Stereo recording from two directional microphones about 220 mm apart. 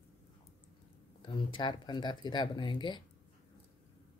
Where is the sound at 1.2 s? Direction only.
20° left (ahead or behind).